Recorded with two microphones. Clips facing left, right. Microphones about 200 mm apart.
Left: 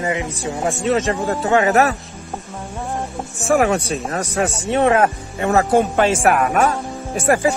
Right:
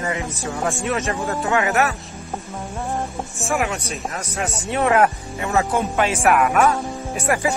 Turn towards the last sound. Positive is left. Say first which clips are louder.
# left 5 dB
turn(degrees=50)  # may be behind; listen again after turning